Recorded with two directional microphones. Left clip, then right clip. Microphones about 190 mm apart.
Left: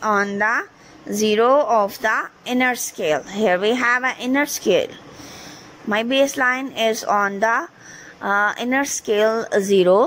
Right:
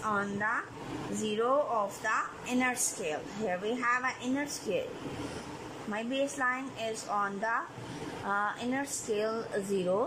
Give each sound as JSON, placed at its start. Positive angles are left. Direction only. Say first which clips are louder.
{"t": 0.0, "sound": "a woman's voice", "louder": "left 13 dB", "side_deg": 45}
{"t": 5.9, "sound": "a woman's voice", "louder": "left 15 dB", "side_deg": 45}